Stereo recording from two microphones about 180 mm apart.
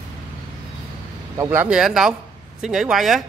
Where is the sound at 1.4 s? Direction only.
10° right (ahead or behind).